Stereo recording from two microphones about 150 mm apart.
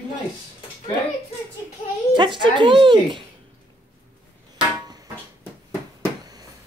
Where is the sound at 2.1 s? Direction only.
30° right (ahead or behind).